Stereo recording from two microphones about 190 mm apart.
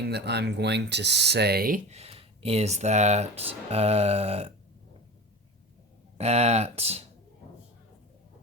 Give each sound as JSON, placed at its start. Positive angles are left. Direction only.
{"t": 0.1, "sound": "speech", "side_deg": -60}
{"t": 1.9, "sound": "speech", "side_deg": -30}
{"t": 6.1, "sound": "speech", "side_deg": -35}